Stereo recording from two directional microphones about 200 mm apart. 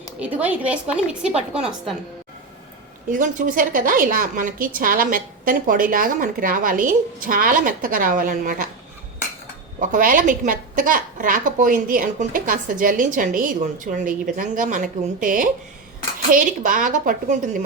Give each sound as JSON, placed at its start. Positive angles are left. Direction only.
{"t": 0.2, "sound": "a woman's voice", "side_deg": -5}
{"t": 3.1, "sound": "a woman's voice", "side_deg": -40}
{"t": 9.8, "sound": "a woman's voice", "side_deg": -40}